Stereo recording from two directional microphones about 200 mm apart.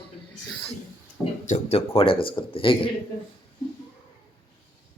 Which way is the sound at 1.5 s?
30° left (ahead or behind).